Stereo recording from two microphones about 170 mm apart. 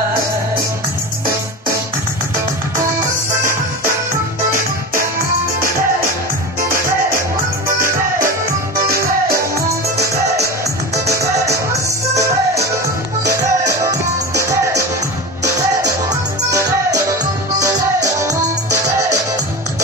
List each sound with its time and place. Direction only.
13.4 s music: 20° right (ahead or behind)
16.1 s music: 20° right (ahead or behind)